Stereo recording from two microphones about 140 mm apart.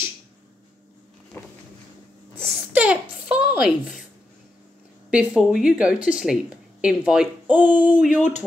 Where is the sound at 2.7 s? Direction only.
10° right (ahead or behind).